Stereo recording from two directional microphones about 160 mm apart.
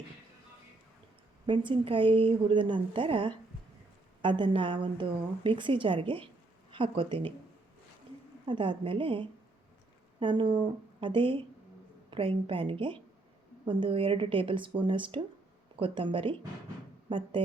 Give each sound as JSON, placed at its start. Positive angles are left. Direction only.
{"t": 1.5, "sound": "a woman's voice", "side_deg": -30}
{"t": 8.4, "sound": "a woman's voice", "side_deg": -30}